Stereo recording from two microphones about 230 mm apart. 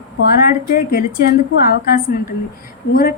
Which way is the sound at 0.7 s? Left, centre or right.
Left.